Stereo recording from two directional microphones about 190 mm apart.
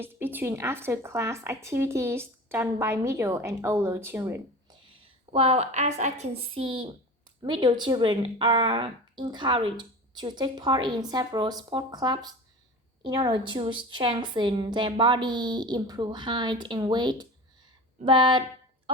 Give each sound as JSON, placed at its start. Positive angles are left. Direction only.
{"t": 0.0, "sound": "a woman's voice", "side_deg": -10}